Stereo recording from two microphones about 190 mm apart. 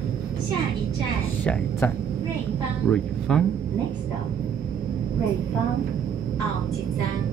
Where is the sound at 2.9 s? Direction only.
5° left (ahead or behind).